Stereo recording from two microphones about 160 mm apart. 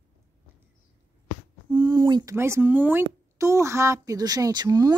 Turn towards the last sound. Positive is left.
turn(degrees=-25)  # may be behind; listen again after turning